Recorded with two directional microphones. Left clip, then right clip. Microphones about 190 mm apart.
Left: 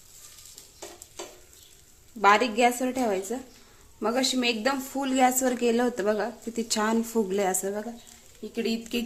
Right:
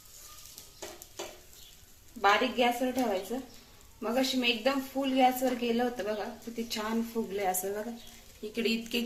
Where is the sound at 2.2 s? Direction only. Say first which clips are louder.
Left 5 dB; 65° left (ahead or behind).